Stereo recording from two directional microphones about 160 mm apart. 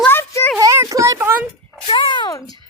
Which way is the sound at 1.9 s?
30° left (ahead or behind).